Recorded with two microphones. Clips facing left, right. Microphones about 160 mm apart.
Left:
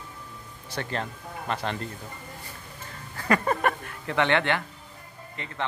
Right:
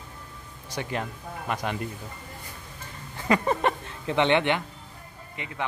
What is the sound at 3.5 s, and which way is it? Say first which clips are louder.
A man's voice: right 1 dB; 20° right (ahead or behind).